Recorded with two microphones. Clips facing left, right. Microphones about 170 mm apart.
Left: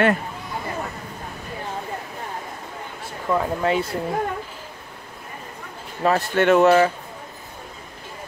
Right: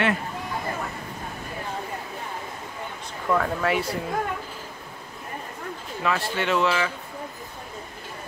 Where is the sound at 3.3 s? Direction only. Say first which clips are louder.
Left 2 dB; 20° left (ahead or behind).